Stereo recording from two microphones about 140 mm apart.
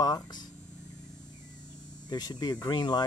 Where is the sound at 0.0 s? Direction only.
30° left (ahead or behind).